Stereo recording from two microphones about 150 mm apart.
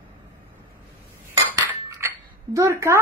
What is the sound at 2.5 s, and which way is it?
Speech, 20° right (ahead or behind).